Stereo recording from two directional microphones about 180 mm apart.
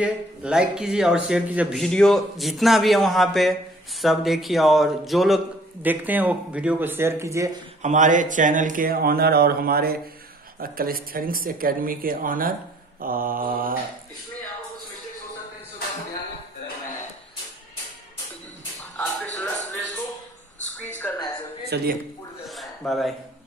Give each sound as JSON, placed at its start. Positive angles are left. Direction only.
{"t": 0.0, "sound": "a man's voice", "side_deg": -5}
{"t": 7.8, "sound": "speech", "side_deg": -45}
{"t": 18.9, "sound": "music", "side_deg": 5}
{"t": 21.6, "sound": "speech", "side_deg": -65}
{"t": 22.5, "sound": "a sound", "side_deg": 0}